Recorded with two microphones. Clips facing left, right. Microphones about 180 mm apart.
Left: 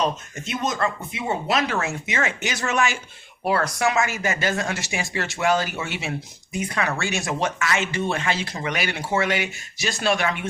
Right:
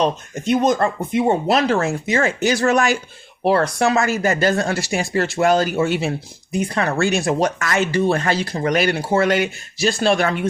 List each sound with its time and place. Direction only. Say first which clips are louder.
0.7 s speech: right 8 dB; 50° right (ahead or behind)
1.2 s speech: right 6 dB; 35° right (ahead or behind)